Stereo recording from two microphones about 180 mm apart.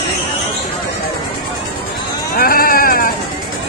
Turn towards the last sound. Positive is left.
turn(degrees=55)  # may be behind; listen again after turning